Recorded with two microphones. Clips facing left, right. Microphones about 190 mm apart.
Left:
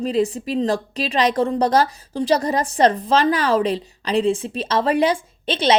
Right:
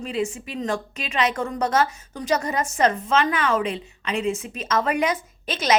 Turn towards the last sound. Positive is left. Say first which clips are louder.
# left 4 dB
turn(degrees=30)  # may be behind; listen again after turning